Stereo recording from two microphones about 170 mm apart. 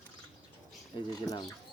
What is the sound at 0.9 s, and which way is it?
Speech, 25° left (ahead or behind).